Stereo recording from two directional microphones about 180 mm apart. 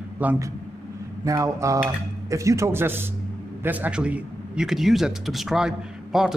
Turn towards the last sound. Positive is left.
turn(degrees=-5)  # may be behind; listen again after turning